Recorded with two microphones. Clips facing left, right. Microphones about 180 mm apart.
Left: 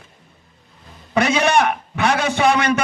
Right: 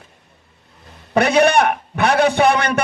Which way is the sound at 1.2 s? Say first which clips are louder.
Right 3 dB; 60° right (ahead or behind).